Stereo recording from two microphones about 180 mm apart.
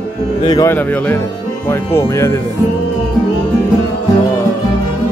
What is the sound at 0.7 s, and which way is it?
Music, 10° left (ahead or behind).